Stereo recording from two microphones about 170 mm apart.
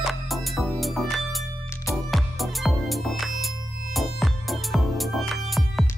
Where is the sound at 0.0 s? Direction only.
Centre (ahead or behind).